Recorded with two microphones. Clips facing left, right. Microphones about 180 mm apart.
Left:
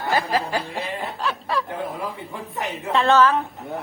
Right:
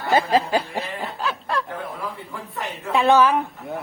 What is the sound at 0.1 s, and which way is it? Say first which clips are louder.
Snicker: right 4 dB; 20° right (ahead or behind).